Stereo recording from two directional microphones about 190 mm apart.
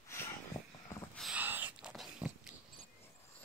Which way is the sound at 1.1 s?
5° right (ahead or behind).